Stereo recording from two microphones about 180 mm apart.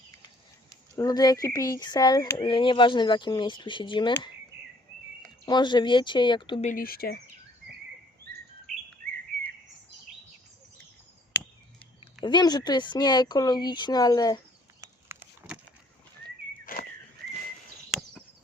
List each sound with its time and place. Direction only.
0.9 s speech: 20° left (ahead or behind)
5.5 s speech: 25° left (ahead or behind)
6.7 s speech: 55° left (ahead or behind)
12.2 s speech: 25° left (ahead or behind)
14.8 s a sound: 10° right (ahead or behind)
16.7 s whistling: 55° left (ahead or behind)